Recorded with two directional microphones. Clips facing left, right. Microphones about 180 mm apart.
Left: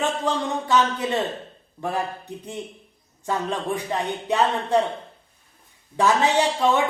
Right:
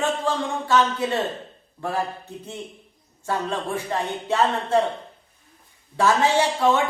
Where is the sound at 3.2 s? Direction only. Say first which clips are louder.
Left 1 dB; 15° left (ahead or behind).